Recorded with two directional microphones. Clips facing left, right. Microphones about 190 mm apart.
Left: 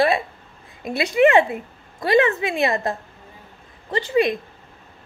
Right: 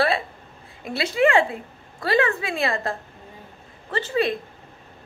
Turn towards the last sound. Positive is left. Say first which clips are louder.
# left 4 dB
turn(degrees=15)  # may be behind; listen again after turning